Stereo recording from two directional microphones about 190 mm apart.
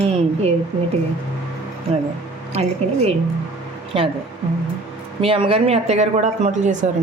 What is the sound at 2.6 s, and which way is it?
Speech, 35° right (ahead or behind).